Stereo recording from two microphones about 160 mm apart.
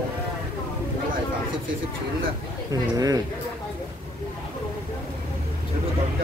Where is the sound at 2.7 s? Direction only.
25° right (ahead or behind).